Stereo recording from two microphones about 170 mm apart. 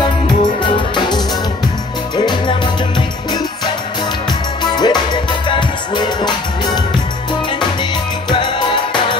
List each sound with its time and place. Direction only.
0.0 s music: 25° left (ahead or behind)
4.3 s music: 25° left (ahead or behind)
8.3 s music: 25° left (ahead or behind)